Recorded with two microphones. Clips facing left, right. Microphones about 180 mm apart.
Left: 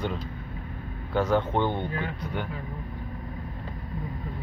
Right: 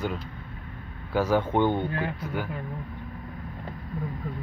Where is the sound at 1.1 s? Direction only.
10° right (ahead or behind).